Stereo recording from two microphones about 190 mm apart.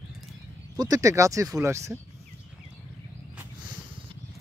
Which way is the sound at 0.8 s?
20° right (ahead or behind).